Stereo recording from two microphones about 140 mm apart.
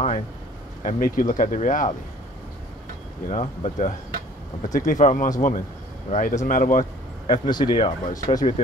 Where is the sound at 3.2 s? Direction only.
65° left (ahead or behind).